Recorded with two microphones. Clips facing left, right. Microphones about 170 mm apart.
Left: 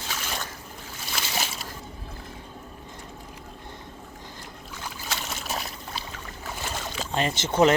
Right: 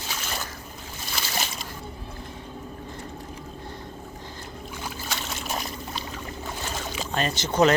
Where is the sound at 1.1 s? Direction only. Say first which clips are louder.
Even; 5° left (ahead or behind).